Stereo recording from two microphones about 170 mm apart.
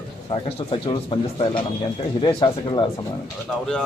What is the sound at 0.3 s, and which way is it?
Speech, 30° left (ahead or behind).